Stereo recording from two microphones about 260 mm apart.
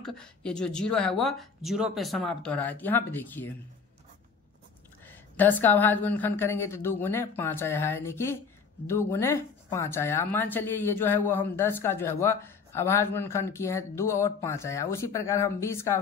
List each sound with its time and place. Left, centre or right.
0.0 s speech: centre
5.0 s a woman's voice: centre